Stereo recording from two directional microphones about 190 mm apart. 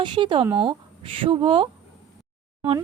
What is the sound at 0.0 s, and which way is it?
Speech, 25° right (ahead or behind).